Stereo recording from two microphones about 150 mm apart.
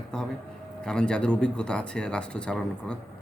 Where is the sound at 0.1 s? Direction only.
5° left (ahead or behind).